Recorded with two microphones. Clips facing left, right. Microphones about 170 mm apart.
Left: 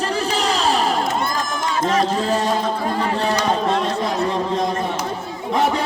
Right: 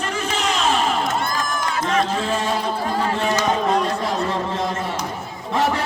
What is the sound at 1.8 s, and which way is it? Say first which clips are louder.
Speech: left 3 dB; 35° left (ahead or behind).